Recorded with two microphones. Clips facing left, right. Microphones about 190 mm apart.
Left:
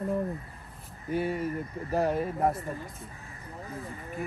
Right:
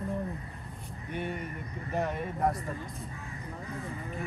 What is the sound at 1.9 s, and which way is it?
Speech, 35° left (ahead or behind).